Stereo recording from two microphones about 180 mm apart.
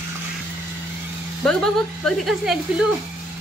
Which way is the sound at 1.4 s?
5° left (ahead or behind).